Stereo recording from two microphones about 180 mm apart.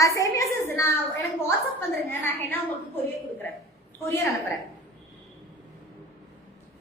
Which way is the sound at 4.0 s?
15° left (ahead or behind).